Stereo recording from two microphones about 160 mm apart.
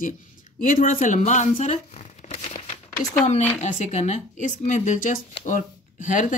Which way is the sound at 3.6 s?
45° left (ahead or behind).